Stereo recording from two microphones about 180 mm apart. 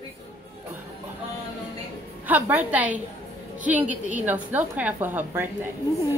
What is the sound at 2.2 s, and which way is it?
A woman's voice, 10° right (ahead or behind).